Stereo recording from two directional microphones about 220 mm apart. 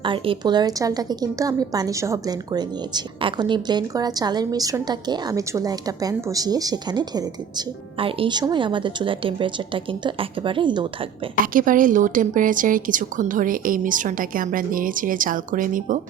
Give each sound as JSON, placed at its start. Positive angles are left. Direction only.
{"t": 0.0, "sound": "a woman's voice", "side_deg": -20}
{"t": 11.5, "sound": "a woman's voice", "side_deg": -35}